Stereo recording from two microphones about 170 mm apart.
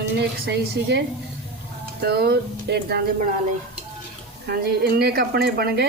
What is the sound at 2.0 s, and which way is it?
Speech, 70° right (ahead or behind).